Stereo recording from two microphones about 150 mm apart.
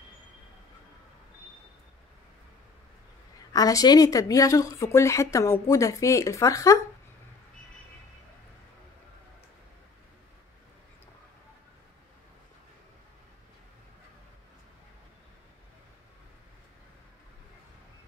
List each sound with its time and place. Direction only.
3.5 s speech: 25° left (ahead or behind)